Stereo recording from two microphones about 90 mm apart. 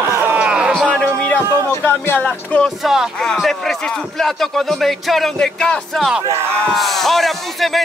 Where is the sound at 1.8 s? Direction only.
20° left (ahead or behind).